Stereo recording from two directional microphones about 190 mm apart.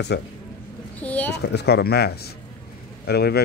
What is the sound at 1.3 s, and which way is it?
A man's voice, 60° left (ahead or behind).